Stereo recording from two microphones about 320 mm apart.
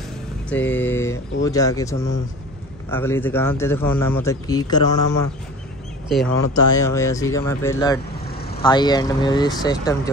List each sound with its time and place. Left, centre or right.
0.7 s speech: centre
6.0 s speech: centre
8.3 s vehicle: left
8.6 s speech: centre